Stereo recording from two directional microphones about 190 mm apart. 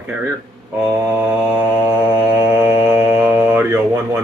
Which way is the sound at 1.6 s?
10° right (ahead or behind).